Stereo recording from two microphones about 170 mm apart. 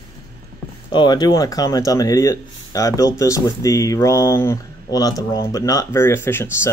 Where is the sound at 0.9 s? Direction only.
25° left (ahead or behind).